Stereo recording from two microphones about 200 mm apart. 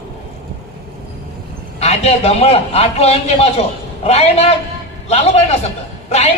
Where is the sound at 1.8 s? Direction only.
30° left (ahead or behind).